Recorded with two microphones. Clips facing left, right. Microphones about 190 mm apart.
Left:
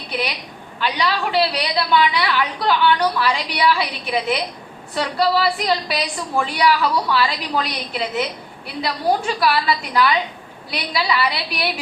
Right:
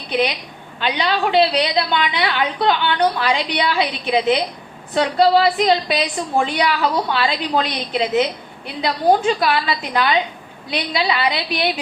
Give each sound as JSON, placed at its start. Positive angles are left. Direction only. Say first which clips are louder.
{"t": 0.8, "sound": "a woman's voice", "louder": "right 2 dB", "side_deg": -25}